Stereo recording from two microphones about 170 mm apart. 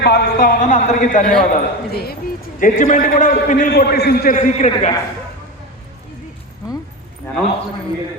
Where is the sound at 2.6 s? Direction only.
50° left (ahead or behind).